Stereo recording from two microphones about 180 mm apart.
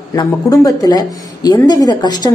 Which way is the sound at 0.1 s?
20° left (ahead or behind).